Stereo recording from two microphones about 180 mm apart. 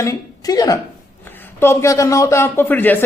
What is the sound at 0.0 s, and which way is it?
Speech, 20° left (ahead or behind).